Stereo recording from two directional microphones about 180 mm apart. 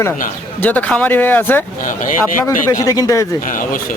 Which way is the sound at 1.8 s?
45° left (ahead or behind).